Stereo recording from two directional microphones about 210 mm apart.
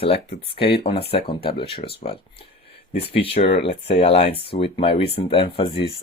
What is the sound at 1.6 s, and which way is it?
Speech, 25° left (ahead or behind).